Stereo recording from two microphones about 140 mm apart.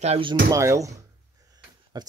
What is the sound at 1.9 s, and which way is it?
Speech, 30° right (ahead or behind).